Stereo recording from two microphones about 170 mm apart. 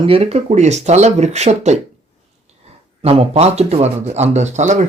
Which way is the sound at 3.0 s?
35° right (ahead or behind).